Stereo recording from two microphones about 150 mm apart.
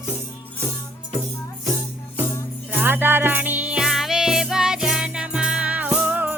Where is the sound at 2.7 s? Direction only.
15° right (ahead or behind).